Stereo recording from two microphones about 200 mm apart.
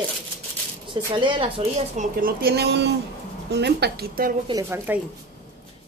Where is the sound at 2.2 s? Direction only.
50° right (ahead or behind).